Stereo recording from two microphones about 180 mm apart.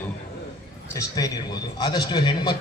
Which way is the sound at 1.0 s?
20° left (ahead or behind).